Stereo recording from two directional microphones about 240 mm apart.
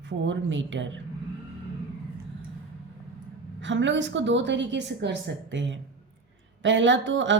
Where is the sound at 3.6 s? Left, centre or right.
Right.